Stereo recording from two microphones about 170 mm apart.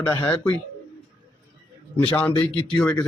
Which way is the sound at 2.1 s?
10° left (ahead or behind).